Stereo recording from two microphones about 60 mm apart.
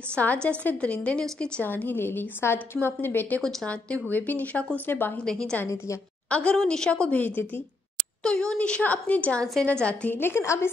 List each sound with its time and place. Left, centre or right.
0.1 s a woman's voice: left
1.6 s a woman's voice: left
3.6 s a woman's voice: left
4.8 s a woman's voice: left
5.2 s a woman's voice: centre; by 7.6 s left
8.2 s a woman's voice: centre
10.1 s a woman's voice: left
10.4 s a woman's voice: left